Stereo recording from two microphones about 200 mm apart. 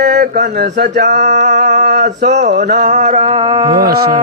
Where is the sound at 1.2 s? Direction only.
40° right (ahead or behind).